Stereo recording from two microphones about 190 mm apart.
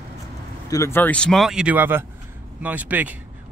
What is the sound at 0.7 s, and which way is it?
Speech, 15° left (ahead or behind).